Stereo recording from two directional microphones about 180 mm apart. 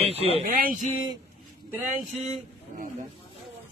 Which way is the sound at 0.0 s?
35° right (ahead or behind).